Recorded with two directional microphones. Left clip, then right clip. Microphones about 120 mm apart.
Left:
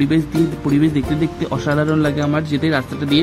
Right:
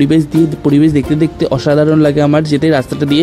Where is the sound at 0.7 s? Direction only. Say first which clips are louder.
Right 7 dB; 35° right (ahead or behind).